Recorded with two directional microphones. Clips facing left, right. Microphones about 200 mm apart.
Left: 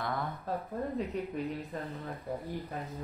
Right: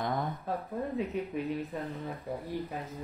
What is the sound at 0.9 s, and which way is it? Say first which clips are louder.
Speech: right 3 dB; 5° right (ahead or behind).